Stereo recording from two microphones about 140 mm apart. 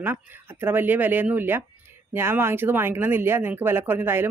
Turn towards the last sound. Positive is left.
turn(degrees=-15)  # may be behind; listen again after turning